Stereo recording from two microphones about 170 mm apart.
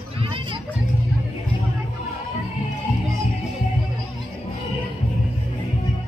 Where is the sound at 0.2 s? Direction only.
30° right (ahead or behind).